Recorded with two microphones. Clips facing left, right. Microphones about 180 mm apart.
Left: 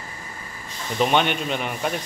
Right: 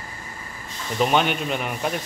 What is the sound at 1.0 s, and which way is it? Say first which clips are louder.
Speech: even; 5° right (ahead or behind).